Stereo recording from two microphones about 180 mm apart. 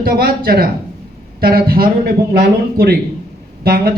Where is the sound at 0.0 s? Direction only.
55° right (ahead or behind).